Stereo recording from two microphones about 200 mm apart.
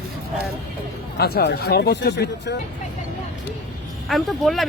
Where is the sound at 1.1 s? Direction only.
55° left (ahead or behind).